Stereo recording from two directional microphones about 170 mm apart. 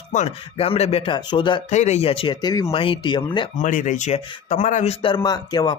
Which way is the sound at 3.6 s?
50° left (ahead or behind).